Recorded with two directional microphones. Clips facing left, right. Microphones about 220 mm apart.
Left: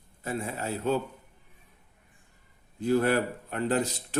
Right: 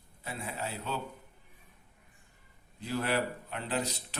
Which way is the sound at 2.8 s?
50° left (ahead or behind).